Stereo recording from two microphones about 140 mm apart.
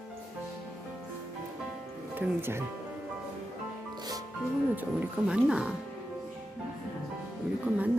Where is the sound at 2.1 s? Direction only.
15° right (ahead or behind).